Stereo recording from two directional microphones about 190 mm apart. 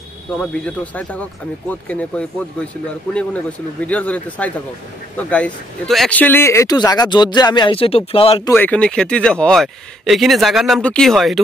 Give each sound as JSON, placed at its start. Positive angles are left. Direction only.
{"t": 0.4, "sound": "speech", "side_deg": 5}
{"t": 3.8, "sound": "speech", "side_deg": 5}
{"t": 8.5, "sound": "speech", "side_deg": 10}